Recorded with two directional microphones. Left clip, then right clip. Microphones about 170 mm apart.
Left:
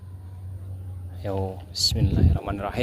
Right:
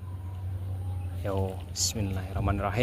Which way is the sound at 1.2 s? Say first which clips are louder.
Left 3 dB; 45° left (ahead or behind).